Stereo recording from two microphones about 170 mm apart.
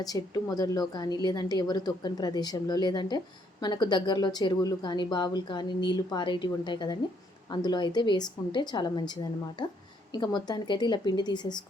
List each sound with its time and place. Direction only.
0.0 s speech: 20° left (ahead or behind)